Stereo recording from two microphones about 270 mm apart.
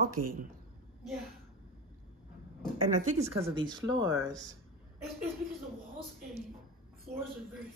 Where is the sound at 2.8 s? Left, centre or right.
Right.